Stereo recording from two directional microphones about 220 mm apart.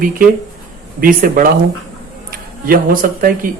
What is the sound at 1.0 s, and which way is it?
Speech, 40° right (ahead or behind).